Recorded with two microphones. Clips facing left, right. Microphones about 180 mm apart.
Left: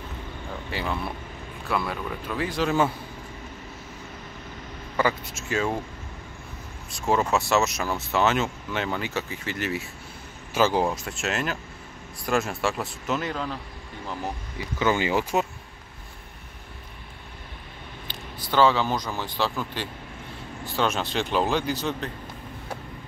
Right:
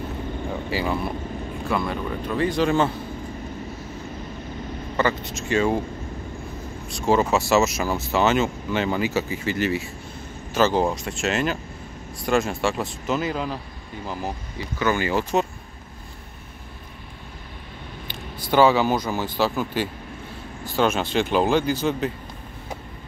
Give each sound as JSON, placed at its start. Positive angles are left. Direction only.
{"t": 0.7, "sound": "speech", "side_deg": -5}
{"t": 4.9, "sound": "speech", "side_deg": 5}
{"t": 6.9, "sound": "speech", "side_deg": 0}
{"t": 10.5, "sound": "speech", "side_deg": 10}
{"t": 14.8, "sound": "speech", "side_deg": 20}
{"t": 18.0, "sound": "speech", "side_deg": -10}